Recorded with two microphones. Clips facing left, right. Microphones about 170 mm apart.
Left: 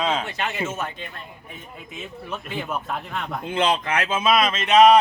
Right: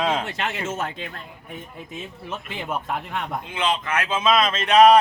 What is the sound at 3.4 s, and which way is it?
Speech, 40° left (ahead or behind).